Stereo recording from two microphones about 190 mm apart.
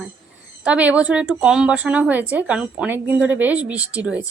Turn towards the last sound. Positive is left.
turn(degrees=-5)  # may be behind; listen again after turning